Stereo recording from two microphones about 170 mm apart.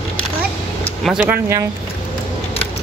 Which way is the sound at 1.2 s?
10° right (ahead or behind).